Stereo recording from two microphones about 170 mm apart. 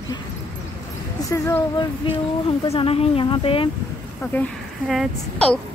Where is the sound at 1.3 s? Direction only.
15° left (ahead or behind).